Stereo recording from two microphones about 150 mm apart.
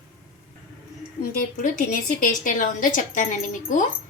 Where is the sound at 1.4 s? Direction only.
65° left (ahead or behind).